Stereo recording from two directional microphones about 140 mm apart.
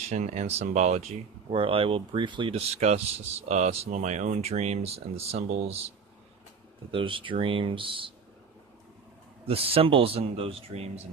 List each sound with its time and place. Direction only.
0.1 s speech: 55° right (ahead or behind)
6.9 s speech: 40° right (ahead or behind)
9.5 s speech: 45° right (ahead or behind)